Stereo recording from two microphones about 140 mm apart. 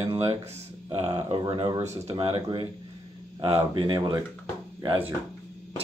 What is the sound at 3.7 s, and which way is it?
Speech, 35° right (ahead or behind).